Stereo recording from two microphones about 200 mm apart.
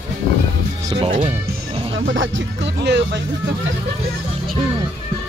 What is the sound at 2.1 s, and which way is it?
Speech, 65° right (ahead or behind).